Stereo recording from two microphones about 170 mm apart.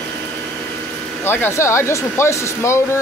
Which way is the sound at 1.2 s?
15° left (ahead or behind).